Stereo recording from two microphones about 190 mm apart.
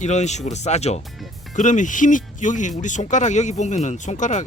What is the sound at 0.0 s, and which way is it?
Speech, 40° left (ahead or behind).